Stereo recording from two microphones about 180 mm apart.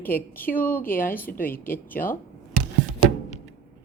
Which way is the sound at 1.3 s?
55° left (ahead or behind).